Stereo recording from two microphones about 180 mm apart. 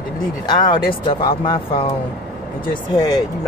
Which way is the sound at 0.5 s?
25° left (ahead or behind).